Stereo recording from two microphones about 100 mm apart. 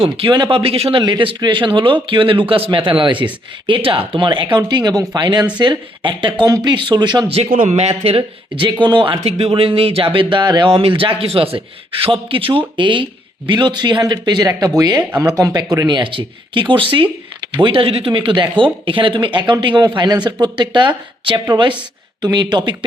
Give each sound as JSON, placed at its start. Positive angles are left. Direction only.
{"t": 0.3, "sound": "a man's voice", "side_deg": -55}
{"t": 1.0, "sound": "a man's voice", "side_deg": -55}
{"t": 4.5, "sound": "speech", "side_deg": -45}
{"t": 6.5, "sound": "speech", "side_deg": -45}
{"t": 7.3, "sound": "speech", "side_deg": -70}
{"t": 9.0, "sound": "speech", "side_deg": -50}
{"t": 9.2, "sound": "a man's voice", "side_deg": -75}
{"t": 10.7, "sound": "a man's voice", "side_deg": -65}